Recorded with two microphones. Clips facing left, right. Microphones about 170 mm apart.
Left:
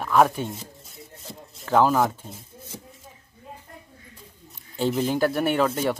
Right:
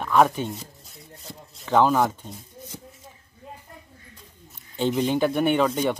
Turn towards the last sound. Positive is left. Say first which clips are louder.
# right 1 dB
turn(degrees=5)  # may be behind; listen again after turning